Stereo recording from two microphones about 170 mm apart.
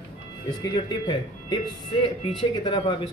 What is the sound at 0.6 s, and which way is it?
Speech, 25° left (ahead or behind).